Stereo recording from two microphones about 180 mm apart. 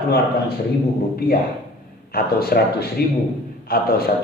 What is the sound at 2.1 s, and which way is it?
A man's voice, 60° left (ahead or behind).